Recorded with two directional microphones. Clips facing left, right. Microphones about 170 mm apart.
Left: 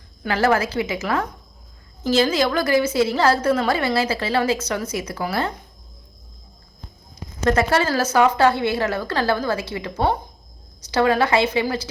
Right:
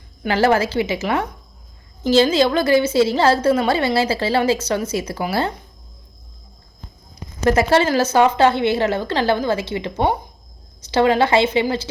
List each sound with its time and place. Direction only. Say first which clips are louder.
0.2 s a woman's voice: right 3 dB; 30° right (ahead or behind)
7.4 s a woman's voice: right 3 dB; 25° right (ahead or behind)